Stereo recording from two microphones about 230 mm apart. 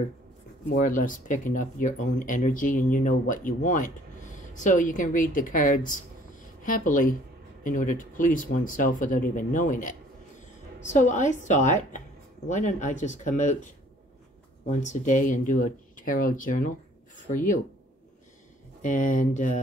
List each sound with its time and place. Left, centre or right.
0.7 s speech: left
14.7 s speech: left
18.8 s speech: left